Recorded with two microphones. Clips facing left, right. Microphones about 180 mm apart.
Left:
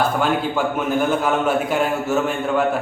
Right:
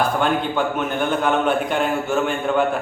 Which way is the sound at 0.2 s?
5° left (ahead or behind).